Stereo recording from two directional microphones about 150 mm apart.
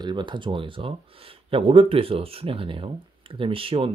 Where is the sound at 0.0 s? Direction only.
30° right (ahead or behind).